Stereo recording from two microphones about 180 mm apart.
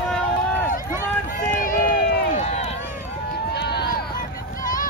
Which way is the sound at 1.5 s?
50° left (ahead or behind).